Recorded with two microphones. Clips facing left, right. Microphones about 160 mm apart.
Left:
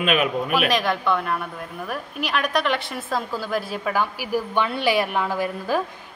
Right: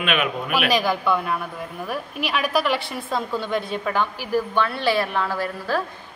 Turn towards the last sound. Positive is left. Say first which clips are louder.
# left 1 dB
turn(degrees=15)  # may be behind; listen again after turning